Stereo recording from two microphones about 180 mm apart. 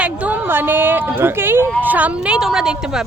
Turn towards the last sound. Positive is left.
turn(degrees=-5)  # may be behind; listen again after turning